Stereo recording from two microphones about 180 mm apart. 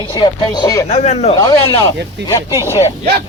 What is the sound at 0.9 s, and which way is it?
Speech, 35° left (ahead or behind).